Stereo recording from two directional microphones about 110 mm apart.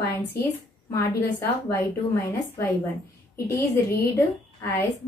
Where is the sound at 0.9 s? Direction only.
25° left (ahead or behind).